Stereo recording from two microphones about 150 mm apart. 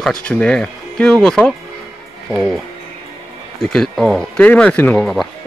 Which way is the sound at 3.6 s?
Centre (ahead or behind).